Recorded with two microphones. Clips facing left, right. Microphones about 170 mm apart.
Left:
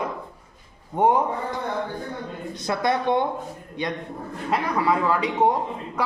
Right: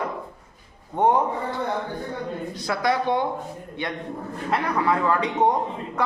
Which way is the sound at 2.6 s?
20° left (ahead or behind).